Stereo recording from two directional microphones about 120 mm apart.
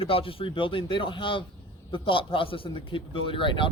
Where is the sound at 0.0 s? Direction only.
50° left (ahead or behind).